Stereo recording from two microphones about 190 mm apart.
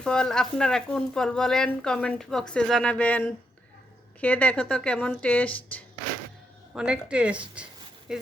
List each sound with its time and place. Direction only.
0.0 s speech: 5° left (ahead or behind)
6.7 s speech: 5° right (ahead or behind)